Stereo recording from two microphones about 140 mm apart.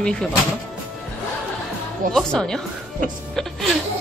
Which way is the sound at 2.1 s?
5° left (ahead or behind).